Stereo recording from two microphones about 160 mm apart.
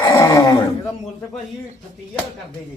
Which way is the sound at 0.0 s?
20° left (ahead or behind).